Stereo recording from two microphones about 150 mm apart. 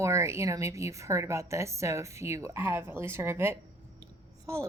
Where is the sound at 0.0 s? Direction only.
20° right (ahead or behind).